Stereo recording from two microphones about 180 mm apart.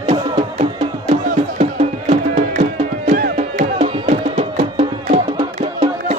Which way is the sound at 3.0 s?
45° right (ahead or behind).